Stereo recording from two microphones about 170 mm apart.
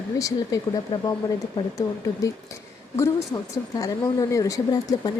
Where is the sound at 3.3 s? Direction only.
20° left (ahead or behind).